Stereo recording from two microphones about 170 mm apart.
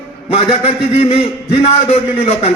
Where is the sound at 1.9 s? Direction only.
40° left (ahead or behind).